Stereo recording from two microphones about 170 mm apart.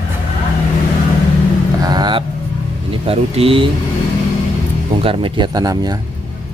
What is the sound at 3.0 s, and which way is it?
Speech, 35° right (ahead or behind).